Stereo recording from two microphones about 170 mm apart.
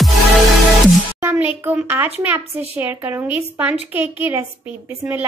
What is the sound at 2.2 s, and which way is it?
A child's voice, 10° right (ahead or behind).